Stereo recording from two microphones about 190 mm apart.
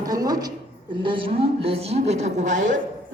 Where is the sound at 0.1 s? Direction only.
20° right (ahead or behind).